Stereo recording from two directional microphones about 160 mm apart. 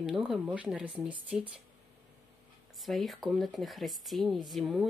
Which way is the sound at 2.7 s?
Centre (ahead or behind).